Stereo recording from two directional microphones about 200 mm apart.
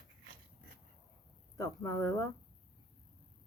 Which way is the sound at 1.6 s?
15° left (ahead or behind).